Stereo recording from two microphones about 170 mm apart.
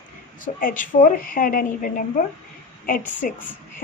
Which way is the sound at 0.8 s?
55° left (ahead or behind).